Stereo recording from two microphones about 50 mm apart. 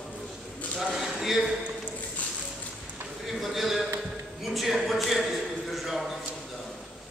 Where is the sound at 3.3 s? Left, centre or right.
Centre.